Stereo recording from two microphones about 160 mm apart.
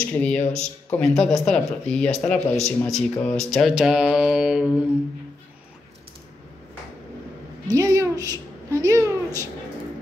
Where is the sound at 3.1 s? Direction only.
5° left (ahead or behind).